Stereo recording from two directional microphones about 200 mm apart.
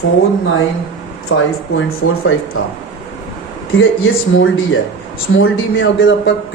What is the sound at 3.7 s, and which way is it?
A man's voice, 75° left (ahead or behind).